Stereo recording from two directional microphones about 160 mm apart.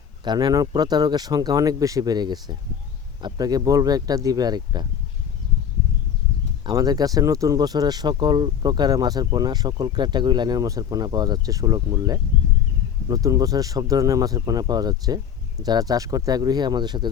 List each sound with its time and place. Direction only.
0.3 s speech: 25° right (ahead or behind)
6.7 s speech: 25° right (ahead or behind)